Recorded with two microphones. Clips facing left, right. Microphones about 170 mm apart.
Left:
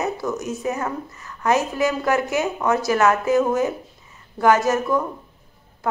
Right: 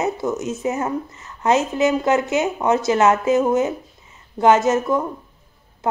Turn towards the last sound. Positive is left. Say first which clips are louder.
# right 2 dB
turn(degrees=-20)  # may be behind; listen again after turning